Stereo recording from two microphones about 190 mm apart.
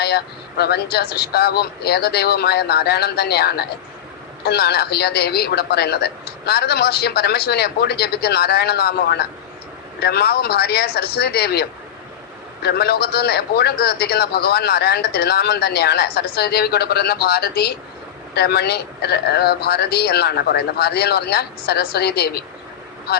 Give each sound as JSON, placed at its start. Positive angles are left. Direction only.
{"t": 0.0, "sound": "a man's voice", "side_deg": 60}
{"t": 12.6, "sound": "a man's voice", "side_deg": 55}